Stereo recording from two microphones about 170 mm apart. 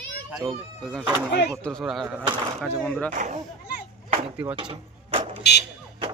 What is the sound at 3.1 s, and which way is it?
Speech, 45° right (ahead or behind).